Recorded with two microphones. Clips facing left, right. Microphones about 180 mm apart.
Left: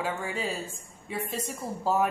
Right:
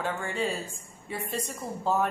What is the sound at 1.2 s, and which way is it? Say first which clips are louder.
Speech: even; 35° right (ahead or behind).